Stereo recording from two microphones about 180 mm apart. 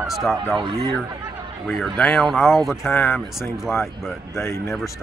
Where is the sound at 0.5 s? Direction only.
25° right (ahead or behind).